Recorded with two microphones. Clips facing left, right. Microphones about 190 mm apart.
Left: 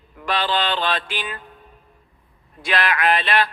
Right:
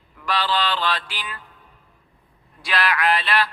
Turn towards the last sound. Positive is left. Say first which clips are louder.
# left 2 dB
turn(degrees=20)  # may be behind; listen again after turning